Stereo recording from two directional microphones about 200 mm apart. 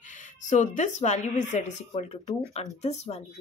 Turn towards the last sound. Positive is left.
turn(degrees=35)  # may be behind; listen again after turning